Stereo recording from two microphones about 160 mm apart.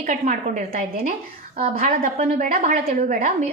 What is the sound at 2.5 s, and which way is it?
Speech, 55° right (ahead or behind).